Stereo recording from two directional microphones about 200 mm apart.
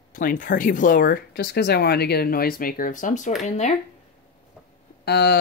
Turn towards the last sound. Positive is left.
turn(degrees=55)  # may be behind; listen again after turning